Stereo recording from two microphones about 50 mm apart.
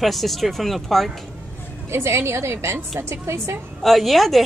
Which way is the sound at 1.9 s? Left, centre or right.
Right.